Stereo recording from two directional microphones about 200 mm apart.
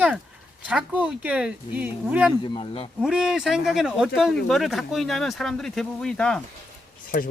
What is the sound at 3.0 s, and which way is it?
Speech, centre (ahead or behind).